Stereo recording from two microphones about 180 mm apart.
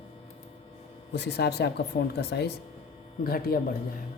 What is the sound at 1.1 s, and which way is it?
A man's voice, 65° left (ahead or behind).